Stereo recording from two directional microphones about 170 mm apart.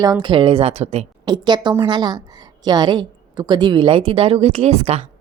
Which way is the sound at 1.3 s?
25° right (ahead or behind).